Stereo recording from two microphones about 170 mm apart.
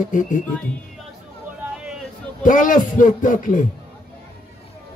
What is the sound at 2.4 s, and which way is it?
A man's voice, 50° left (ahead or behind).